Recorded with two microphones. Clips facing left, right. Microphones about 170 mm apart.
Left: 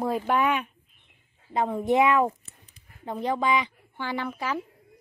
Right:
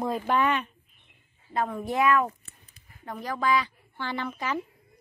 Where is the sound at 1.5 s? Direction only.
25° left (ahead or behind); by 4.6 s 5° left (ahead or behind).